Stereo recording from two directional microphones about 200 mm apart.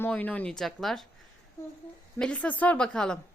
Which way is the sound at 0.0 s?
10° left (ahead or behind).